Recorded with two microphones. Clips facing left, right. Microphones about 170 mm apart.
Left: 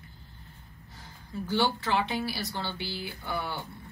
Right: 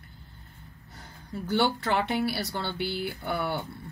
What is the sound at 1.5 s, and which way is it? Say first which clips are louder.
Speech: right 2 dB; 60° right (ahead or behind).